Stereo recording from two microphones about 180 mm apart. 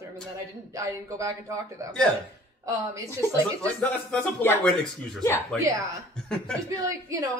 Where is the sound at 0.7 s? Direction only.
15° right (ahead or behind).